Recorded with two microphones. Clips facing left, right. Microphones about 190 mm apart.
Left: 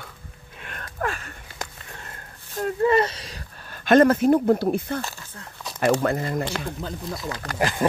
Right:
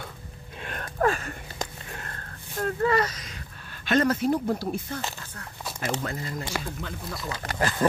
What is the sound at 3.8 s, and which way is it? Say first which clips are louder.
Speech: left 7 dB; 50° left (ahead or behind).